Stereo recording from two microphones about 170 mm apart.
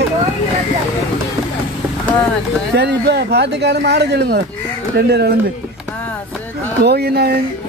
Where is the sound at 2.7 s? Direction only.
85° right; by 5.3 s 70° right (ahead or behind).